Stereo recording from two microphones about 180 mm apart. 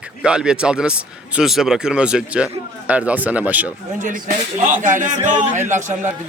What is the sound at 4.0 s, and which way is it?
Speech, 45° right (ahead or behind).